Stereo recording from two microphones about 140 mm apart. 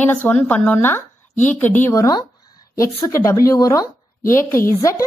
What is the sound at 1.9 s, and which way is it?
A woman's voice, 25° left (ahead or behind).